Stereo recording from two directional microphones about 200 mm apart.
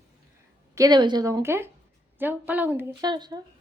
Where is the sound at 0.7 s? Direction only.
20° right (ahead or behind).